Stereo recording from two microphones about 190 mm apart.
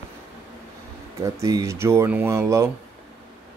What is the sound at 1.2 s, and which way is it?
Speech, 15° right (ahead or behind).